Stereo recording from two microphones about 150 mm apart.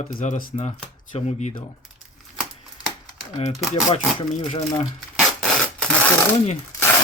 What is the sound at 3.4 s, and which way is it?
Speech, 40° left (ahead or behind).